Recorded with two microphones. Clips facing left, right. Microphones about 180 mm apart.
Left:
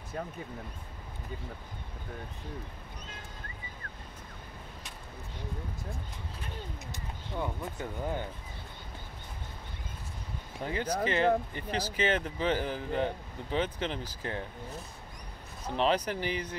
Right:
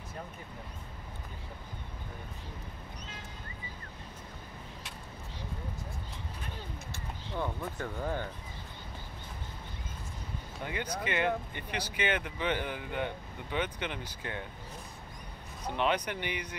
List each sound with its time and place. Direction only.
6.9 s speech: 15° left (ahead or behind)
10.6 s speech: 35° left (ahead or behind)
15.7 s speech: 35° left (ahead or behind)